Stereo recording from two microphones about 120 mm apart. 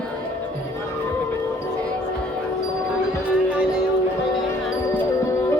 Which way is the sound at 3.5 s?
5° right (ahead or behind).